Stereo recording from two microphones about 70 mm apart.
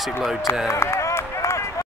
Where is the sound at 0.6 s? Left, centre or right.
Left.